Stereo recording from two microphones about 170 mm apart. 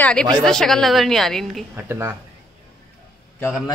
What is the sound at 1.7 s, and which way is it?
Speech, 15° right (ahead or behind).